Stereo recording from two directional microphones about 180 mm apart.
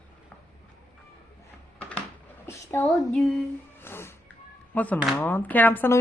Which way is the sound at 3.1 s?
Centre (ahead or behind).